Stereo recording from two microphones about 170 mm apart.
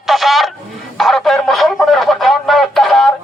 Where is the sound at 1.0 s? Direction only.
Centre (ahead or behind).